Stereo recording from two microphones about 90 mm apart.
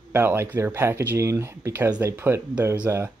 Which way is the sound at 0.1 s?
30° right (ahead or behind).